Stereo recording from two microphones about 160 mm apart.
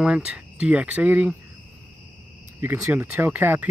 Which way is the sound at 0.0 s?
5° right (ahead or behind).